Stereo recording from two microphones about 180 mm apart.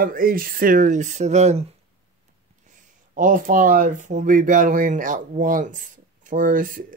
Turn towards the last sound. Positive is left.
turn(degrees=-50)  # may be behind; listen again after turning